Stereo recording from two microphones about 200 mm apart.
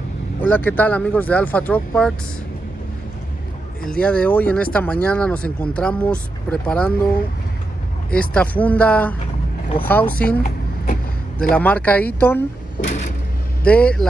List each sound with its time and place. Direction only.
0.4 s speech: 10° left (ahead or behind)
3.8 s speech: 5° left (ahead or behind)
11.5 s speech: 5° left (ahead or behind)
12.8 s vehicle: 40° left (ahead or behind)
13.7 s speech: 5° left (ahead or behind)